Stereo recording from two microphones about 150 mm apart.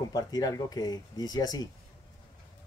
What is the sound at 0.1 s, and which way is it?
Speech, 25° left (ahead or behind).